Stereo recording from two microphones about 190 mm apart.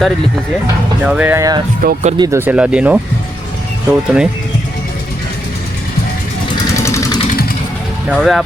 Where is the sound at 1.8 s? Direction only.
55° right (ahead or behind).